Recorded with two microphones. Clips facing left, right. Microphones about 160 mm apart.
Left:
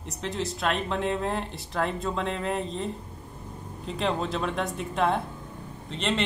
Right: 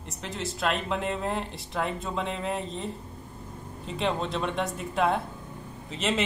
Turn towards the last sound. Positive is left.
turn(degrees=-5)  # may be behind; listen again after turning